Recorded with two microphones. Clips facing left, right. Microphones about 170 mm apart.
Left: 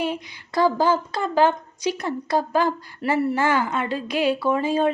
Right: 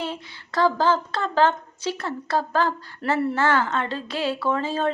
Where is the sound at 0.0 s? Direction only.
15° left (ahead or behind).